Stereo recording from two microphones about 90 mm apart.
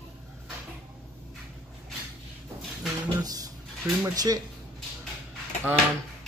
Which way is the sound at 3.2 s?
45° right (ahead or behind).